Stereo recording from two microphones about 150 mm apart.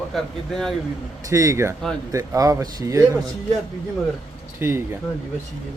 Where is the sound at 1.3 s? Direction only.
20° right (ahead or behind).